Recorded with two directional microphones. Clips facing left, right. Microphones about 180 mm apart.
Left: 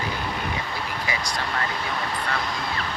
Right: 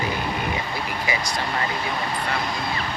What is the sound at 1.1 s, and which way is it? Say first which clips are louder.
Speech: right 3 dB; 10° right (ahead or behind).